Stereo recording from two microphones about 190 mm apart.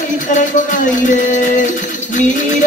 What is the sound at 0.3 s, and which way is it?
Music, 40° left (ahead or behind).